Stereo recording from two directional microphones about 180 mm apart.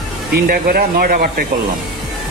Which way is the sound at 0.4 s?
55° right (ahead or behind).